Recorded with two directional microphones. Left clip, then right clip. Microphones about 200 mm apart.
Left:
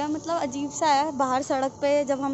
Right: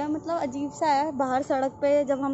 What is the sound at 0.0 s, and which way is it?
A woman's voice, 10° right (ahead or behind).